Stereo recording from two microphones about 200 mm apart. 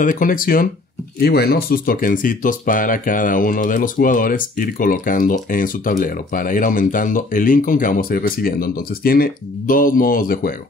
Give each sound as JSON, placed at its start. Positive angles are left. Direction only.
{"t": 0.0, "sound": "speech", "side_deg": 40}